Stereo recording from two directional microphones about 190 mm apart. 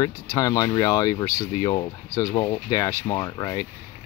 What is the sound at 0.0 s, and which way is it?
Speech, 15° left (ahead or behind).